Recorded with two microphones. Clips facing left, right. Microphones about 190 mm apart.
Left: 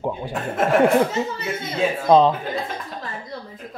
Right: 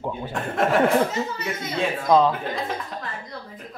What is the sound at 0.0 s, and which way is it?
Speech, 10° left (ahead or behind).